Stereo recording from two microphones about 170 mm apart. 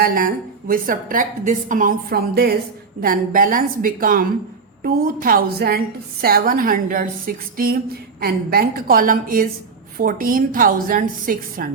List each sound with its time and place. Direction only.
0.0 s a woman's voice: 55° right (ahead or behind)